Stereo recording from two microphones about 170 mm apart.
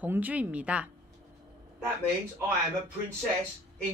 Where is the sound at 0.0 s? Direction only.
10° right (ahead or behind).